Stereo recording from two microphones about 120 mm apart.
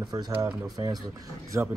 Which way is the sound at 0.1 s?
30° right (ahead or behind).